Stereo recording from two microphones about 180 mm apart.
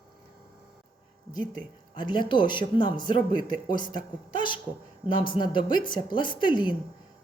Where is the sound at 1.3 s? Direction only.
25° left (ahead or behind).